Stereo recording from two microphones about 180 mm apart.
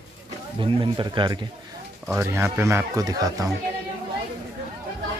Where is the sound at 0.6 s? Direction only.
30° right (ahead or behind).